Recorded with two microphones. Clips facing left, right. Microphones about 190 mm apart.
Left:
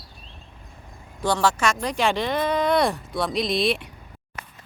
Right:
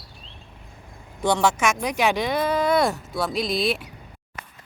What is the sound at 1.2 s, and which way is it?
Speech, 20° right (ahead or behind).